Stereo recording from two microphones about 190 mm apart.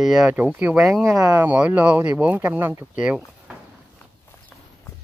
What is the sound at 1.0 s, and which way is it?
Speech, 20° right (ahead or behind).